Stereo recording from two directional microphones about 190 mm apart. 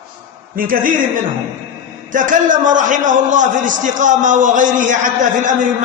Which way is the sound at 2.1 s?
45° right (ahead or behind).